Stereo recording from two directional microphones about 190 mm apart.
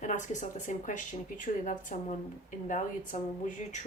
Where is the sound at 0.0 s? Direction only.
40° left (ahead or behind).